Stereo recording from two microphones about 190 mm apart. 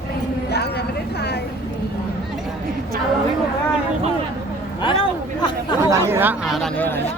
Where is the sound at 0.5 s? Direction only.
60° left (ahead or behind).